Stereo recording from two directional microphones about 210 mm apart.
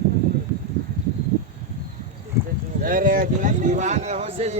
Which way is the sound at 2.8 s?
40° right (ahead or behind).